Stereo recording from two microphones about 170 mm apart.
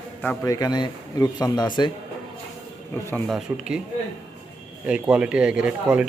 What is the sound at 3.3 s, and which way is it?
Speech, centre (ahead or behind).